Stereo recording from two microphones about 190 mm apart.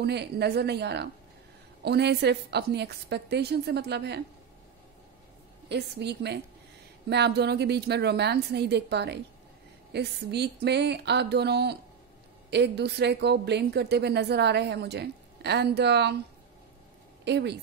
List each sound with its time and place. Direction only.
0.0 s a woman's voice: 60° right (ahead or behind)
5.7 s a woman's voice: 60° right (ahead or behind)
17.2 s speech: 65° right (ahead or behind)